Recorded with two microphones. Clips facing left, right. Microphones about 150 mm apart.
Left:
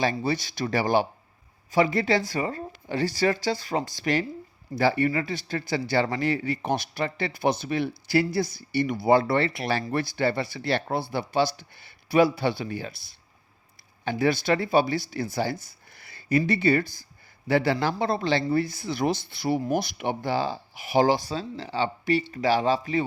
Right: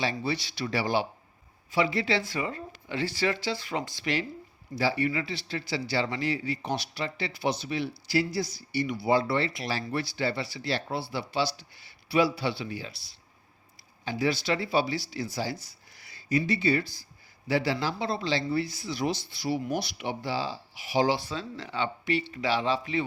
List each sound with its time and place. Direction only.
0.0 s speech: 45° left (ahead or behind)